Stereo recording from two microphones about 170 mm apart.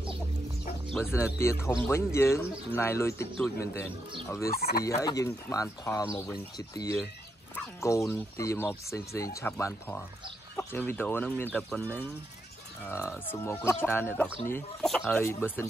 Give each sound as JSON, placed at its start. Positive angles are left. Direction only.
{"t": 1.1, "sound": "speech", "side_deg": 15}
{"t": 4.6, "sound": "speech", "side_deg": 65}
{"t": 4.8, "sound": "speech", "side_deg": 20}
{"t": 15.1, "sound": "speech", "side_deg": 15}